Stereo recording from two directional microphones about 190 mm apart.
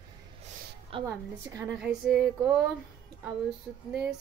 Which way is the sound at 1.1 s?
15° right (ahead or behind).